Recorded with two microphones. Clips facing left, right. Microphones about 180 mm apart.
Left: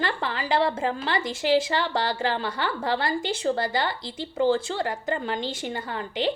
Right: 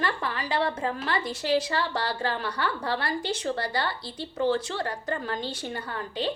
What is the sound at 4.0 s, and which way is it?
Speech, 90° left.